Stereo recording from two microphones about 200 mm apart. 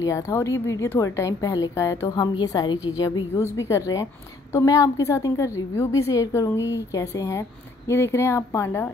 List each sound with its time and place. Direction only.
0.0 s a woman's voice: 15° left (ahead or behind)